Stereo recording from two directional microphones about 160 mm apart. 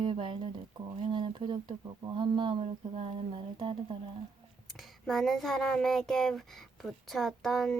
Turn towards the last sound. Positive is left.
turn(degrees=5)  # may be behind; listen again after turning